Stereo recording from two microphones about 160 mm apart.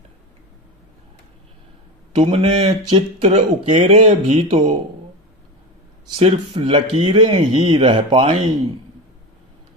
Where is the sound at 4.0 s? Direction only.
45° right (ahead or behind).